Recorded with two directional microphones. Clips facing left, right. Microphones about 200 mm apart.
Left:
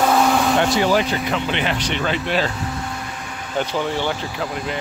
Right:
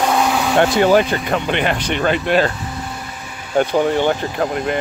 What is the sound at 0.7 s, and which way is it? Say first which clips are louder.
Speech: right 5 dB; 50° right (ahead or behind).